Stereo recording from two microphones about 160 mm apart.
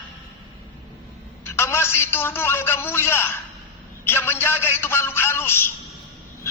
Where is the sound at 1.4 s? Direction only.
15° left (ahead or behind).